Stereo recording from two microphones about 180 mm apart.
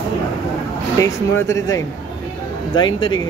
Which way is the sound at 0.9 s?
15° left (ahead or behind).